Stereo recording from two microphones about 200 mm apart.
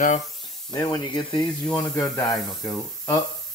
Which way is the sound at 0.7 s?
20° left (ahead or behind).